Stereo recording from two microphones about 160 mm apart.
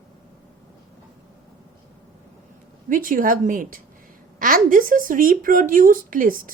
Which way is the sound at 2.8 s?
60° right (ahead or behind).